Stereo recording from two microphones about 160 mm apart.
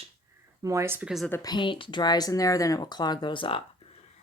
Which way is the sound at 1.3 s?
25° left (ahead or behind).